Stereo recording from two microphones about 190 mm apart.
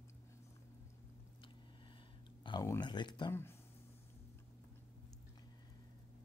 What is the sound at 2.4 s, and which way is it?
Speech, 20° left (ahead or behind).